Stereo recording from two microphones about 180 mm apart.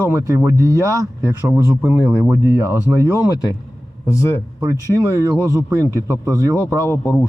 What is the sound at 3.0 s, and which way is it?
Speech, 15° left (ahead or behind).